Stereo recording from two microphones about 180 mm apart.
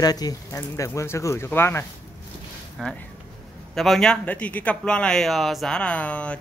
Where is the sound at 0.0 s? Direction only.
20° left (ahead or behind).